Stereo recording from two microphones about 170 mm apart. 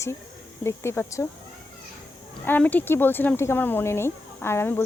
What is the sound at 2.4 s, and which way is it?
Speech, 10° left (ahead or behind).